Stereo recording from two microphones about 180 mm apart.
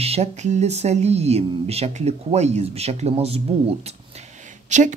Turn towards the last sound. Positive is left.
turn(degrees=-40)  # may be behind; listen again after turning